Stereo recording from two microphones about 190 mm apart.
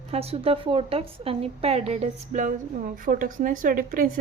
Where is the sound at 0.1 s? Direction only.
30° right (ahead or behind).